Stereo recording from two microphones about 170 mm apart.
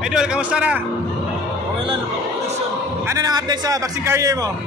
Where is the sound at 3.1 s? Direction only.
20° right (ahead or behind).